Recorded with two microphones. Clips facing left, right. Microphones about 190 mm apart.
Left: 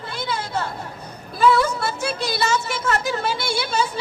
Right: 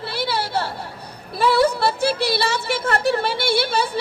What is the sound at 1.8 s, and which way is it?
Speech, 60° right (ahead or behind).